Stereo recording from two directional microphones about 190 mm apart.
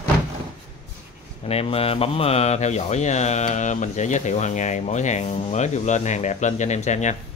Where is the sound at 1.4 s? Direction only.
30° left (ahead or behind).